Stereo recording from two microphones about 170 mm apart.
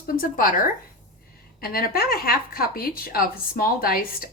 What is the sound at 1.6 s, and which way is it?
A woman's voice, 60° left (ahead or behind).